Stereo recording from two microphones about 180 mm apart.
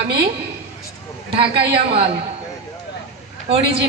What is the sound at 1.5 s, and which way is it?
Speech, 65° right (ahead or behind).